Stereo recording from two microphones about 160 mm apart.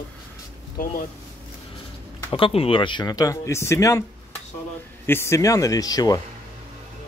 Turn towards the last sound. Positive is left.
turn(degrees=25)  # may be behind; listen again after turning